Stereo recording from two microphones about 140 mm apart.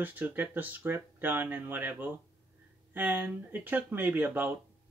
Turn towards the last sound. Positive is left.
turn(degrees=-15)  # may be behind; listen again after turning